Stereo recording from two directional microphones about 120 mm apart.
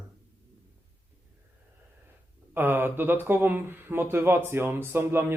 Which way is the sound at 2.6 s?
20° right (ahead or behind).